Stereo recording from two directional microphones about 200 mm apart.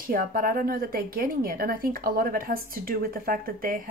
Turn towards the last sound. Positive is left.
turn(degrees=-45)  # may be behind; listen again after turning